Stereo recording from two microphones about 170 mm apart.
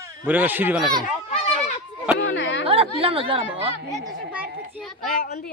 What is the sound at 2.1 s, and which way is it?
Speech, 90° left.